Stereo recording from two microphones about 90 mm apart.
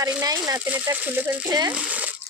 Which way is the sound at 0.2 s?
45° right (ahead or behind).